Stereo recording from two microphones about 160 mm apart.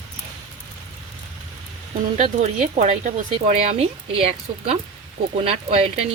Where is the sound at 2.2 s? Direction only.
45° right (ahead or behind).